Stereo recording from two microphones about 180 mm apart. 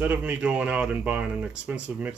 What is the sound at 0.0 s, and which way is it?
Speech, 10° right (ahead or behind).